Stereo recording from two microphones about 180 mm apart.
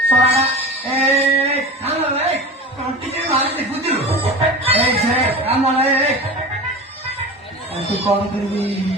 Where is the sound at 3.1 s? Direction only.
35° right (ahead or behind).